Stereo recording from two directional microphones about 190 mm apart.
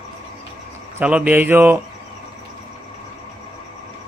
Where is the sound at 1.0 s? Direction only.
5° right (ahead or behind).